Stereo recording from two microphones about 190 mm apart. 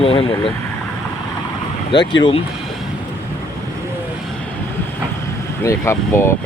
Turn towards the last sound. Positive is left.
turn(degrees=15)  # may be behind; listen again after turning